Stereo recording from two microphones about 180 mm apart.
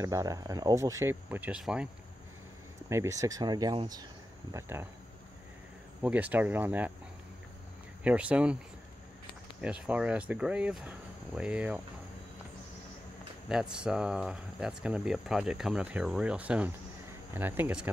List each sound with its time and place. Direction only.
0.0 s speech: 20° right (ahead or behind)
2.9 s speech: 15° right (ahead or behind)
6.0 s speech: 10° right (ahead or behind)
8.0 s speech: 5° right (ahead or behind)
9.6 s speech: 5° right (ahead or behind)
13.5 s speech: 5° right (ahead or behind)